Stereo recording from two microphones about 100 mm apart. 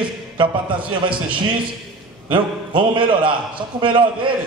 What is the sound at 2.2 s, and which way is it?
A man's voice, 55° right (ahead or behind).